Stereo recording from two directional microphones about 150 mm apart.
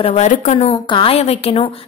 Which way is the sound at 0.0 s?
40° left (ahead or behind).